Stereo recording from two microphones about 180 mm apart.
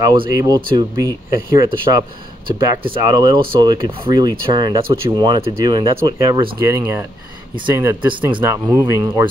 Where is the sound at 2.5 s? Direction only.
20° right (ahead or behind).